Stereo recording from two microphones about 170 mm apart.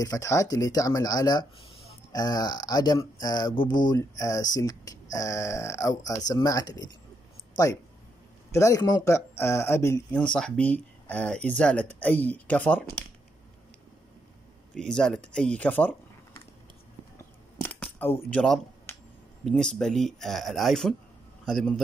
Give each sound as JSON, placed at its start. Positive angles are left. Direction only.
{"t": 0.0, "sound": "speech", "side_deg": 20}
{"t": 10.1, "sound": "speech", "side_deg": 5}
{"t": 14.7, "sound": "speech", "side_deg": 5}
{"t": 17.6, "sound": "a sound", "side_deg": 10}
{"t": 19.4, "sound": "speech", "side_deg": 0}